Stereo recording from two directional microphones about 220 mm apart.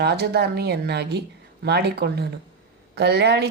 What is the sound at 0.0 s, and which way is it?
Speech, 50° right (ahead or behind).